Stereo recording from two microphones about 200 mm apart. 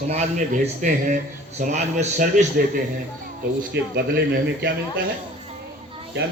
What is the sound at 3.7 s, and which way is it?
Speech, 55° right (ahead or behind).